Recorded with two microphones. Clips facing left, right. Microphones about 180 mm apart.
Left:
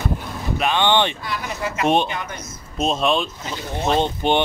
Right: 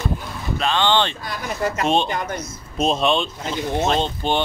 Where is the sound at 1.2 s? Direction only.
45° right (ahead or behind).